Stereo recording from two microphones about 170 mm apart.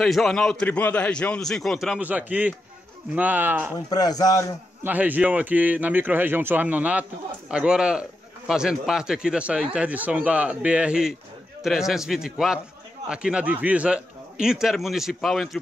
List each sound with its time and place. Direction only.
0.0 s a man's voice: centre (ahead or behind)
3.7 s a man's voice: 20° left (ahead or behind)
4.8 s a man's voice: 10° right (ahead or behind)